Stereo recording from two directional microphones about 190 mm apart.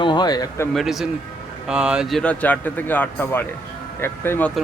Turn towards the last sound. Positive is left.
turn(degrees=10)  # may be behind; listen again after turning